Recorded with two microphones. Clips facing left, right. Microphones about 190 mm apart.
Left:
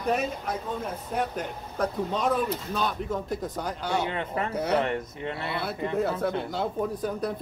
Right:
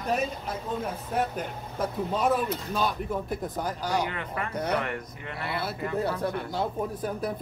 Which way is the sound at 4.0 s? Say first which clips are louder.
Left 2 dB; 25° left (ahead or behind).